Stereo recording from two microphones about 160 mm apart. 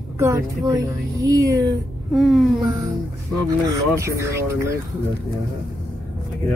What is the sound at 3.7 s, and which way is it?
A woman's voice, 20° right (ahead or behind).